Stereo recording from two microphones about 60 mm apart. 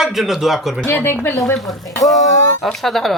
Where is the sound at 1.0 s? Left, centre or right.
Left.